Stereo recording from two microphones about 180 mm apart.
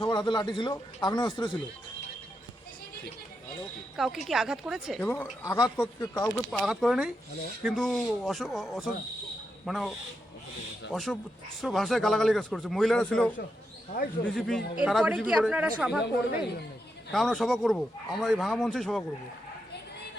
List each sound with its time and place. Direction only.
0.0 s speech: 25° left (ahead or behind)
3.9 s a woman's voice: centre (ahead or behind)
5.4 s speech: 20° left (ahead or behind)
6.3 s speech: centre (ahead or behind)
10.9 s speech: centre (ahead or behind)
17.1 s speech: centre (ahead or behind)